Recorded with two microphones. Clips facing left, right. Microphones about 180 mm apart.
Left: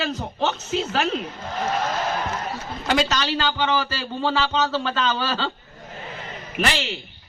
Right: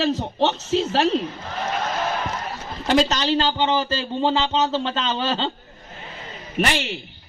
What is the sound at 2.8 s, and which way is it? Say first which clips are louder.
A man's voice: right 3 dB; 30° right (ahead or behind).